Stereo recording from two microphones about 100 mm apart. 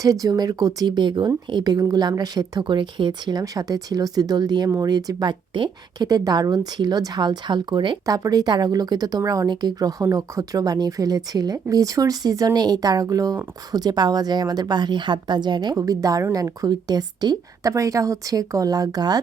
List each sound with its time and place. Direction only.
0.0 s speech: 35° right (ahead or behind)
8.0 s speech: 35° right (ahead or behind)
15.7 s speech: 35° right (ahead or behind)